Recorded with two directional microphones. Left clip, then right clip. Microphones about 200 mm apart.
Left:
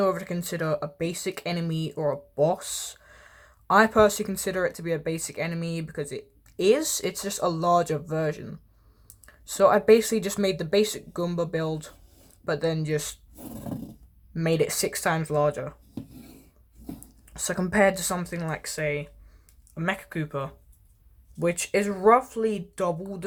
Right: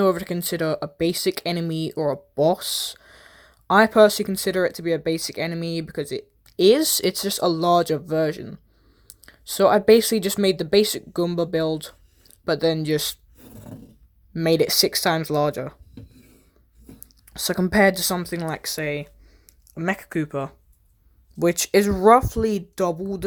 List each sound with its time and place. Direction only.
0.0 s speech: 35° right (ahead or behind)
14.3 s speech: 35° right (ahead or behind)
17.0 s speech: 30° right (ahead or behind)